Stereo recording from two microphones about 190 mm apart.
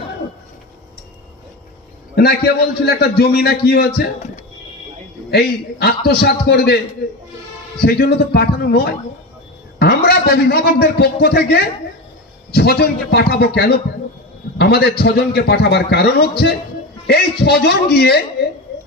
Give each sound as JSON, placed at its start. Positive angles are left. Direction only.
{"t": 2.1, "sound": "a man's voice", "side_deg": 55}
{"t": 5.3, "sound": "a man's voice", "side_deg": 55}
{"t": 7.8, "sound": "a man's voice", "side_deg": 55}